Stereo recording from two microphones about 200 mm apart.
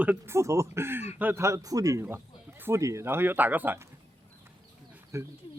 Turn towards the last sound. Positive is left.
turn(degrees=-15)  # may be behind; listen again after turning